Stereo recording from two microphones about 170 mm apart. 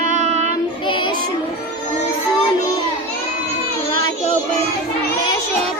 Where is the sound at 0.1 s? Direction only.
40° right (ahead or behind).